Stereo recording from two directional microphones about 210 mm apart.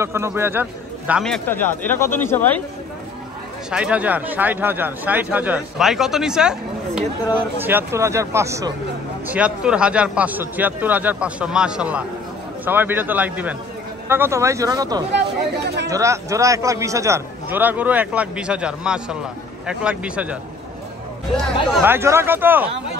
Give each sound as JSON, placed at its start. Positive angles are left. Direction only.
{"t": 0.0, "sound": "a man's voice", "side_deg": -10}
{"t": 3.7, "sound": "a man's voice", "side_deg": -5}
{"t": 7.6, "sound": "a man's voice", "side_deg": -10}
{"t": 15.1, "sound": "speech", "side_deg": -55}
{"t": 15.9, "sound": "a man's voice", "side_deg": -15}
{"t": 21.8, "sound": "a man's voice", "side_deg": -10}